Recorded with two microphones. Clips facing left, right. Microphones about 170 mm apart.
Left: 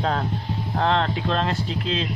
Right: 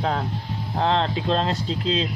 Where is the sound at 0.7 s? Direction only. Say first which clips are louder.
Even; 20° right (ahead or behind).